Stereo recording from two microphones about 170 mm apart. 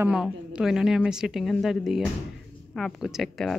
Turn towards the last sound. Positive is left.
turn(degrees=5)  # may be behind; listen again after turning